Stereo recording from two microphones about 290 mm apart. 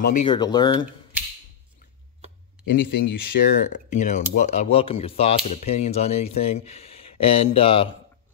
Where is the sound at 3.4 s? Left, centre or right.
Left.